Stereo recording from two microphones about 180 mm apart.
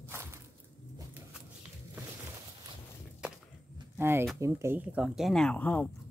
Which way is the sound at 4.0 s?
15° right (ahead or behind).